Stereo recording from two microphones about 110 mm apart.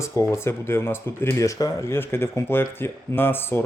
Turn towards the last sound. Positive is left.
turn(degrees=20)  # may be behind; listen again after turning